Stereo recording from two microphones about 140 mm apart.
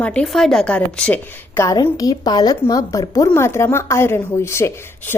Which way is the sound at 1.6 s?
25° left (ahead or behind).